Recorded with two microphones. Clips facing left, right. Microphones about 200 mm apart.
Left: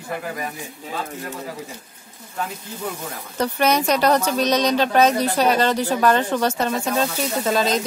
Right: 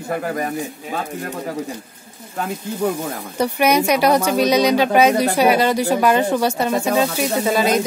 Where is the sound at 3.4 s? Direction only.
10° right (ahead or behind).